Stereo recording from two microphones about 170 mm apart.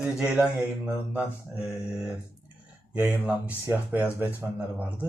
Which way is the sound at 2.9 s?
5° right (ahead or behind).